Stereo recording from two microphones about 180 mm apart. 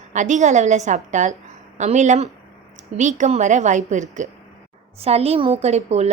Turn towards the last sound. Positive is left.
turn(degrees=-35)  # may be behind; listen again after turning